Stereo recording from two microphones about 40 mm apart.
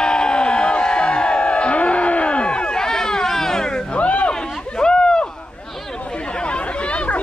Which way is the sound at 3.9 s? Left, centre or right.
Left.